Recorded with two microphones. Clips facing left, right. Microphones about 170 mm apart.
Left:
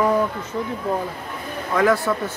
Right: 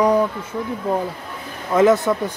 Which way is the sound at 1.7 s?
20° right (ahead or behind).